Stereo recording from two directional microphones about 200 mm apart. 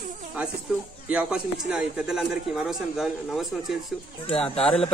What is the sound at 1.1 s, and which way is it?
Speech, 5° right (ahead or behind).